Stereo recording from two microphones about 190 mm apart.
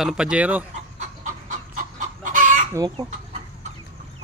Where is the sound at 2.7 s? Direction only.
20° right (ahead or behind).